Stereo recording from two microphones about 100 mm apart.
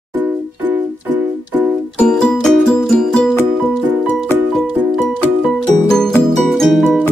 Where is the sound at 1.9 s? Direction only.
5° left (ahead or behind).